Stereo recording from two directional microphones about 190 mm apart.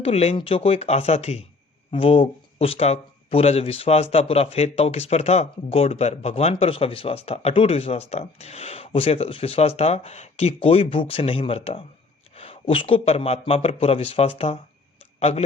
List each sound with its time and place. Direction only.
0.0 s a man's voice: 30° left (ahead or behind)